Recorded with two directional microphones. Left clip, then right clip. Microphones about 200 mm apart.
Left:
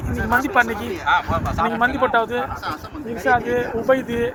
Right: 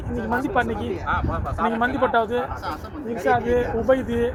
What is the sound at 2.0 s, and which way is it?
Speech, 15° left (ahead or behind).